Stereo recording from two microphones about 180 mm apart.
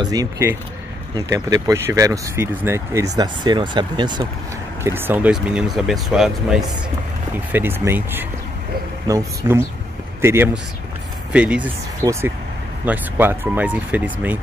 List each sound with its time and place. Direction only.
0.0 s speech: 20° right (ahead or behind)
4.8 s speech: 10° right (ahead or behind)